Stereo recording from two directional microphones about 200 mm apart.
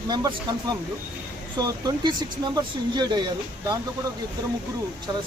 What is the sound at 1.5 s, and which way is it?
Speech, 20° right (ahead or behind).